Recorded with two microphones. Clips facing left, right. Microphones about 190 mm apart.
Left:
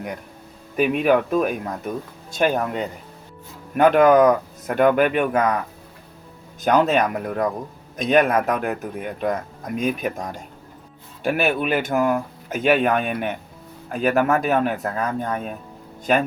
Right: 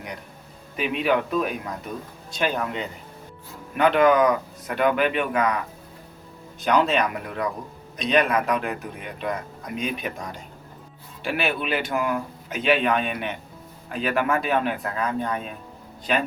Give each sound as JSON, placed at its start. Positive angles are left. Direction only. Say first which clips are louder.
{"t": 0.8, "sound": "a man's voice", "louder": "left 5 dB", "side_deg": 45}
{"t": 6.6, "sound": "a man's voice", "louder": "left 3 dB", "side_deg": 45}